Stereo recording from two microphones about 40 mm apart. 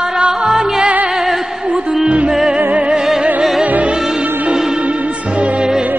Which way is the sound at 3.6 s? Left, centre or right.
Right.